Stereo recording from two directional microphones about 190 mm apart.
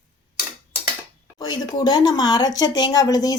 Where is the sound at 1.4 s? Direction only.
20° left (ahead or behind).